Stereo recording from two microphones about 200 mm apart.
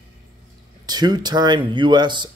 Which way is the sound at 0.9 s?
20° right (ahead or behind).